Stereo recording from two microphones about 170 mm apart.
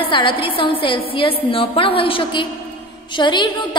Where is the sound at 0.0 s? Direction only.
30° left (ahead or behind).